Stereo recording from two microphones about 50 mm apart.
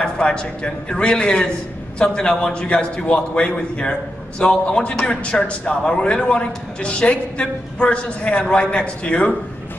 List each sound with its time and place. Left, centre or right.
0.0 s a man's voice: centre